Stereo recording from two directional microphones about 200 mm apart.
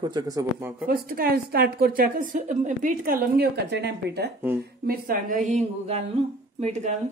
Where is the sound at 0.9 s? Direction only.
45° right (ahead or behind).